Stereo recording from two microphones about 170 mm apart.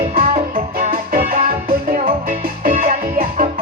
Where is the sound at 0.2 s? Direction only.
55° right (ahead or behind).